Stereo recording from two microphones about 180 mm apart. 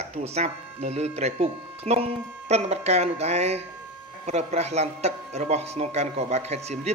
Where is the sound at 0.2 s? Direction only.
35° right (ahead or behind).